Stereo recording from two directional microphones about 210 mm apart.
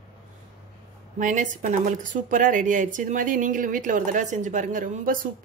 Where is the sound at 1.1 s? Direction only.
35° right (ahead or behind).